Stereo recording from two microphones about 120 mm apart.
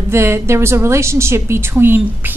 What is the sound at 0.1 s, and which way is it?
A woman's voice, 20° right (ahead or behind).